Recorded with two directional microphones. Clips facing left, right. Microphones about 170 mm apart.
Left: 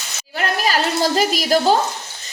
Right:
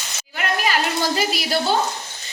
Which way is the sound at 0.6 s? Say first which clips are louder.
Left 4 dB; 40° left (ahead or behind).